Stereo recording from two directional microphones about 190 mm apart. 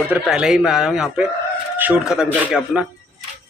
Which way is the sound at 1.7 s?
10° right (ahead or behind).